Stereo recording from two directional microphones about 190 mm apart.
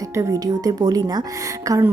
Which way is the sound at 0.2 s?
20° right (ahead or behind).